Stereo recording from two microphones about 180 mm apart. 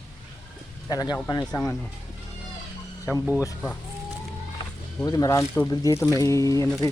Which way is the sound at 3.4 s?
10° left (ahead or behind).